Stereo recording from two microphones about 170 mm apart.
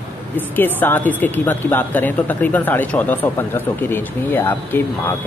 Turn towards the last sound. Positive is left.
turn(degrees=10)  # may be behind; listen again after turning